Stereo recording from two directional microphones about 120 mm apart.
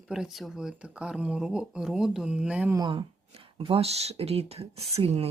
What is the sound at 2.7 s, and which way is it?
Speech, 35° right (ahead or behind).